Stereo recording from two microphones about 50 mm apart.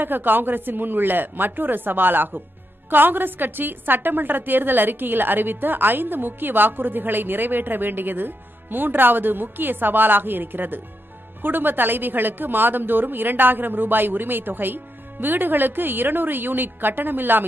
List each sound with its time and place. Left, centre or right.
0.0 s a woman's voice: right